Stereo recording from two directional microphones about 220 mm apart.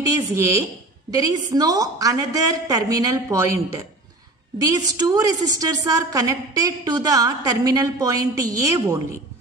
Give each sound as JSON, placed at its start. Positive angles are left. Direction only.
{"t": 0.3, "sound": "a woman's voice", "side_deg": -15}